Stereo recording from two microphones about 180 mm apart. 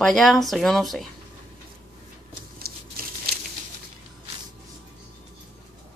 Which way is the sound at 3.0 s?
55° right (ahead or behind).